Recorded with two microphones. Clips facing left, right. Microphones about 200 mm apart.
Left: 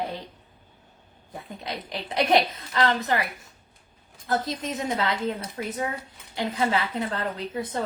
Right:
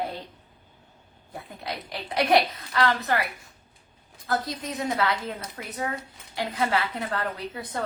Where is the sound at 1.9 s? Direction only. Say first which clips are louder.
Even; 20° left (ahead or behind).